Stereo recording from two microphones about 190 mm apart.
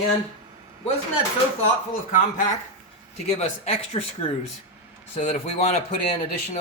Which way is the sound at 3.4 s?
30° left (ahead or behind).